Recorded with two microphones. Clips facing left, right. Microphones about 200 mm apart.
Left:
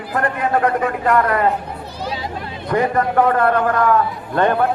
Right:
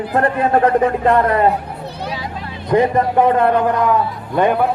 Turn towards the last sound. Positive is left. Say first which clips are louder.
# right 1 dB
turn(degrees=-10)  # may be behind; listen again after turning